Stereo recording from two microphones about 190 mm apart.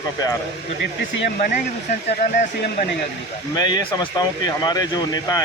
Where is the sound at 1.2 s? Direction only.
50° left (ahead or behind).